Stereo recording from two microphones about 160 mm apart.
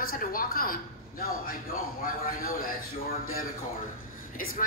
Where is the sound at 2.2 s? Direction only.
60° left (ahead or behind).